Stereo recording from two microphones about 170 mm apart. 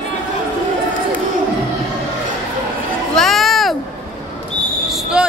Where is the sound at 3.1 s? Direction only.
Centre (ahead or behind).